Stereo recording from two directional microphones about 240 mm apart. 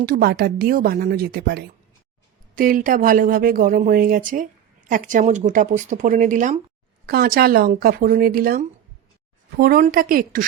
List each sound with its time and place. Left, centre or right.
0.0 s speech: right